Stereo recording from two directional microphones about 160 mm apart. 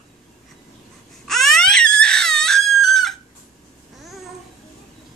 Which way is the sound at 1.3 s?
Centre (ahead or behind).